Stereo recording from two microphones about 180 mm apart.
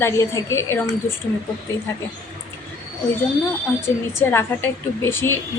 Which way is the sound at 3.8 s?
15° left (ahead or behind).